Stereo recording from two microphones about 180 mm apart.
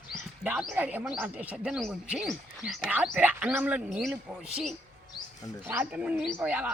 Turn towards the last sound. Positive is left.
turn(degrees=-10)  # may be behind; listen again after turning